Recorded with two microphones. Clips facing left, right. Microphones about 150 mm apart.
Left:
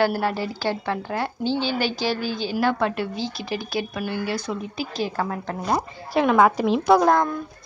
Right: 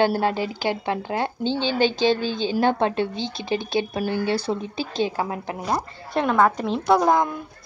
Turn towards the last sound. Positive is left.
turn(degrees=0)  # may be behind; listen again after turning